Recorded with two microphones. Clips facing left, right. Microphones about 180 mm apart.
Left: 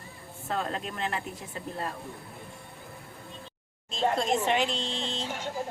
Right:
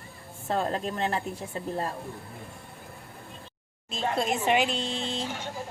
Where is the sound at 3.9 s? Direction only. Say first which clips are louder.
Left 2 dB; 5° right (ahead or behind).